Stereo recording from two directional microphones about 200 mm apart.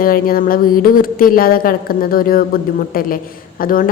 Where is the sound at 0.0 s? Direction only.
45° left (ahead or behind).